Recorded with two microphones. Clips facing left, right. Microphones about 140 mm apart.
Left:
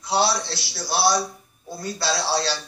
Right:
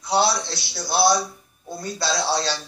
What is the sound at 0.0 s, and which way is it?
Speech, 15° right (ahead or behind).